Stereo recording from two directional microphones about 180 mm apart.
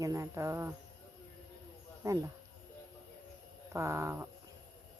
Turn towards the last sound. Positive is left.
turn(degrees=-15)  # may be behind; listen again after turning